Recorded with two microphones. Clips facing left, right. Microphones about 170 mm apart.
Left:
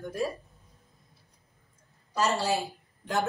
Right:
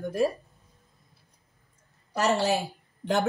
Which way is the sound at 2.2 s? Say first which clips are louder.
Right 3 dB; 65° right (ahead or behind).